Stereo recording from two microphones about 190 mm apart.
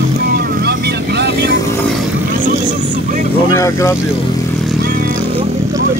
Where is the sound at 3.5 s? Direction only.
15° left (ahead or behind).